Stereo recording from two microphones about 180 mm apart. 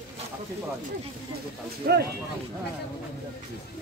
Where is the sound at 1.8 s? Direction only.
55° right (ahead or behind).